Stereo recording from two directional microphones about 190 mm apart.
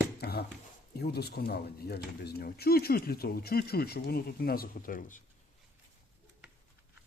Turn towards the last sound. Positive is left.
turn(degrees=45)  # may be behind; listen again after turning